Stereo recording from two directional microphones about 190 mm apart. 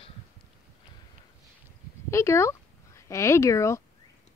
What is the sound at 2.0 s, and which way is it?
Speech, 15° left (ahead or behind).